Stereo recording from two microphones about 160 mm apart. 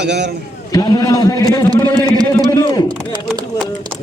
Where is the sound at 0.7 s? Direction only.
25° left (ahead or behind).